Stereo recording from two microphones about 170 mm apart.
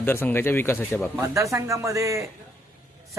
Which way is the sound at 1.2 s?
15° right (ahead or behind).